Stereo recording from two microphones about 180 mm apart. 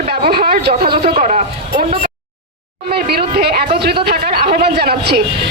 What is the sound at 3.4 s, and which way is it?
Speech, 60° right (ahead or behind).